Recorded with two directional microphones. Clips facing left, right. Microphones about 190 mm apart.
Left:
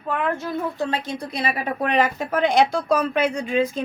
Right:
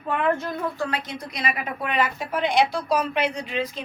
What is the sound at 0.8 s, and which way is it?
A woman's voice, 25° left (ahead or behind).